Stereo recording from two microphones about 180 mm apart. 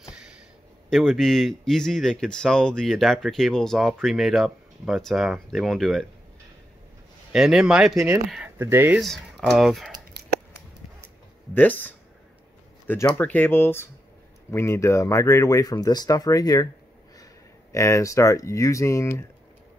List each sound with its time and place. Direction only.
0.8 s speech: centre (ahead or behind)
7.3 s speech: centre (ahead or behind)
9.0 s speech: centre (ahead or behind)
11.5 s speech: 10° left (ahead or behind)
17.7 s speech: 15° left (ahead or behind)